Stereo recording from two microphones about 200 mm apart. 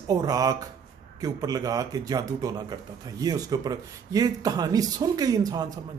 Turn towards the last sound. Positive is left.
turn(degrees=-20)  # may be behind; listen again after turning